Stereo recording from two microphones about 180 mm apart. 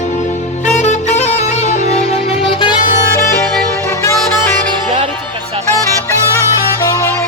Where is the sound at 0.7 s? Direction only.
40° left (ahead or behind).